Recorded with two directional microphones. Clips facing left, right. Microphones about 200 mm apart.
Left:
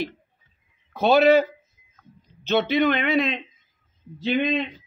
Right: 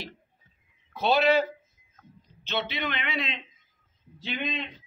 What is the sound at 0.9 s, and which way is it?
Speech, 50° left (ahead or behind).